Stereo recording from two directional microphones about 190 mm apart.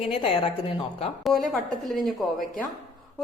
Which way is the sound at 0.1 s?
30° left (ahead or behind).